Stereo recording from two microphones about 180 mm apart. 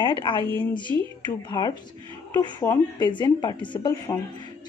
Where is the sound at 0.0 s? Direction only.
30° left (ahead or behind).